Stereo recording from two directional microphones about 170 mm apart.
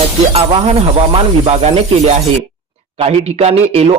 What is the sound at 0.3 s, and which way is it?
A man's voice, 35° right (ahead or behind).